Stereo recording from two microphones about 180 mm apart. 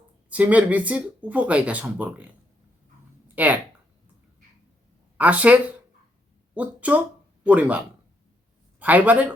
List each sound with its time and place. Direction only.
0.3 s speech: 10° right (ahead or behind)
3.3 s speech: 10° right (ahead or behind)
5.1 s speech: 10° right (ahead or behind)